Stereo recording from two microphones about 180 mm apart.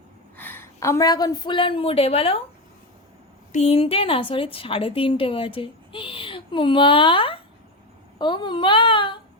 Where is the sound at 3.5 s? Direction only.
35° left (ahead or behind).